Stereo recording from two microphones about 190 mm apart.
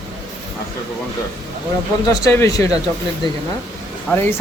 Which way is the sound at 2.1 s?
15° left (ahead or behind).